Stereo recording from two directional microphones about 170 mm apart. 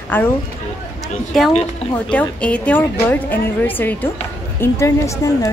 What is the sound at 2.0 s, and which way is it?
A woman's voice, 5° left (ahead or behind).